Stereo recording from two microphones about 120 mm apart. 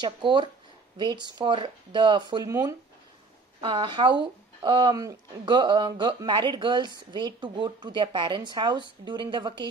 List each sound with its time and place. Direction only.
0.0 s speech: 40° right (ahead or behind)